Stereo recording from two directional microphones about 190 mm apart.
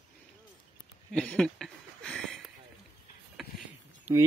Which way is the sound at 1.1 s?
5° left (ahead or behind).